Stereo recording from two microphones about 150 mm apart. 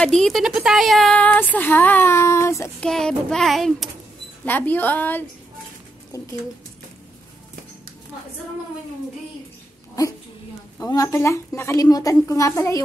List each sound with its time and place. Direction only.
0.0 s speech: 5° left (ahead or behind); by 2.7 s 20° left (ahead or behind)
2.8 s speech: 5° left (ahead or behind)
4.5 s speech: 10° left (ahead or behind)
6.1 s a woman's voice: 25° left (ahead or behind)
10.0 s a woman's voice: 25° left (ahead or behind)